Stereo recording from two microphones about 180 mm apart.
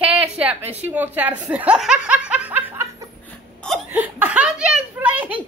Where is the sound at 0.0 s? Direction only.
10° right (ahead or behind).